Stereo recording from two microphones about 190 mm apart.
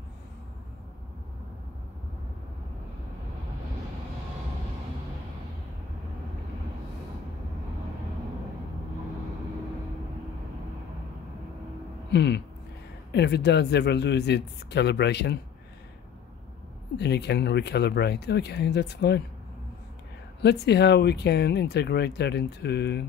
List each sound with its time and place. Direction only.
12.1 s a sound: 65° left (ahead or behind)
13.1 s speech: 60° left (ahead or behind)
16.9 s speech: 60° left (ahead or behind)
20.4 s speech: 60° left (ahead or behind)